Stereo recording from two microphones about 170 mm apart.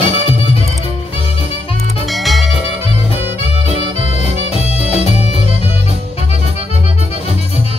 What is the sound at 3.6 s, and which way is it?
Music, 35° left (ahead or behind).